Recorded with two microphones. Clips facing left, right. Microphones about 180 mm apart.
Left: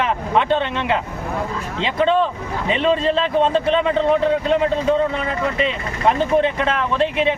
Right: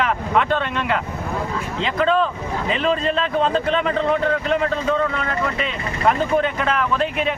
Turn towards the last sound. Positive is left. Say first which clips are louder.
# left 2 dB
turn(degrees=25)  # may be behind; listen again after turning